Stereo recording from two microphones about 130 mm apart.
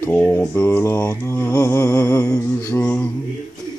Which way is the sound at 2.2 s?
15° left (ahead or behind).